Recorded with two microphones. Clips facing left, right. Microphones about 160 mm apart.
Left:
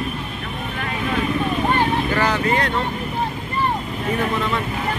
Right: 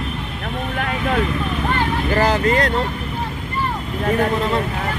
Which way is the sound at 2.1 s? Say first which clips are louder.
Right 6 dB; 40° right (ahead or behind).